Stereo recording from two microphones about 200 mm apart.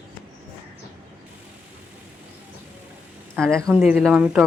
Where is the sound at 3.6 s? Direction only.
10° right (ahead or behind).